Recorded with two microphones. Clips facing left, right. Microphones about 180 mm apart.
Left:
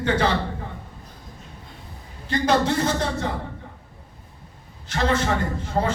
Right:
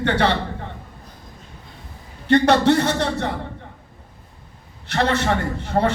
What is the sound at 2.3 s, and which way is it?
A man's voice, 65° right (ahead or behind).